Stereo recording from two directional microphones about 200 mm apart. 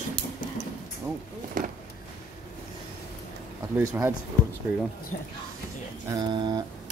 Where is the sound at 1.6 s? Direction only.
40° right (ahead or behind).